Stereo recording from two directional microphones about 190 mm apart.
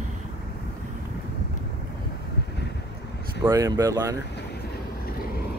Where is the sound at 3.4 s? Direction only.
15° right (ahead or behind).